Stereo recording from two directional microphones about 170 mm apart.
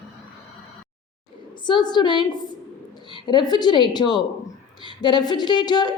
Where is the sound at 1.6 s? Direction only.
25° left (ahead or behind).